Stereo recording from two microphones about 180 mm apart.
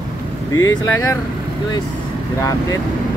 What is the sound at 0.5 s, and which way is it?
Speech, 20° left (ahead or behind).